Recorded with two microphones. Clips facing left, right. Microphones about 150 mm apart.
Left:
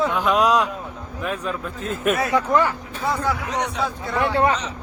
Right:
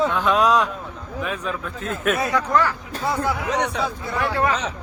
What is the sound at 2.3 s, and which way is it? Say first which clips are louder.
Speech: left 3 dB; 20° left (ahead or behind).